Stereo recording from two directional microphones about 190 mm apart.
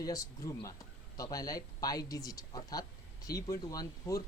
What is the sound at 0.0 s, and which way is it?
Speech, 15° left (ahead or behind).